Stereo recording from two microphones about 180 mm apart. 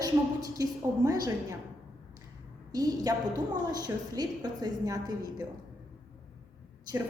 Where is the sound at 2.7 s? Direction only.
20° right (ahead or behind).